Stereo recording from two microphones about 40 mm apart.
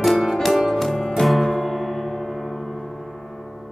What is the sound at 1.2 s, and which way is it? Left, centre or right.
Gong, centre.